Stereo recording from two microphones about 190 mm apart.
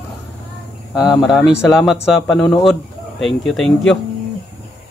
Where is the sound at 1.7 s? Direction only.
Centre (ahead or behind).